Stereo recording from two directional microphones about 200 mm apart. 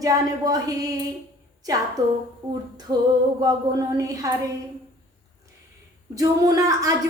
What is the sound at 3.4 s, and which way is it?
Speech, 15° right (ahead or behind).